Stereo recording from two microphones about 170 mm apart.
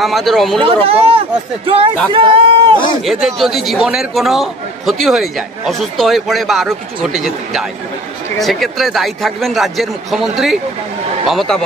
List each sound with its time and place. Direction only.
0.0 s a man's voice: centre (ahead or behind)
0.6 s speech: 35° right (ahead or behind)
3.1 s a man's voice: centre (ahead or behind)